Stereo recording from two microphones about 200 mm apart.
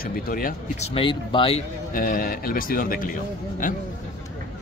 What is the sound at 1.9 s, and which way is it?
A man's voice, 45° left (ahead or behind).